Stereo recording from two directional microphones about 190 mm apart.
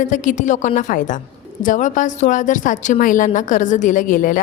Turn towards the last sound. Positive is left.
turn(degrees=45)  # may be behind; listen again after turning